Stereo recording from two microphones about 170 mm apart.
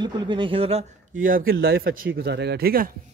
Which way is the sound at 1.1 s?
55° right (ahead or behind).